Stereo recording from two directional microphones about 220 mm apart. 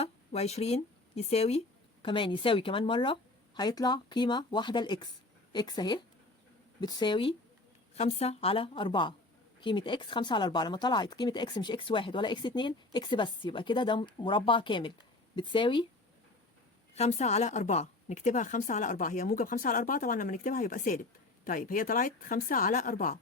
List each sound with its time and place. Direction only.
0.0 s speech: 30° left (ahead or behind)
16.9 s a woman's voice: 30° left (ahead or behind)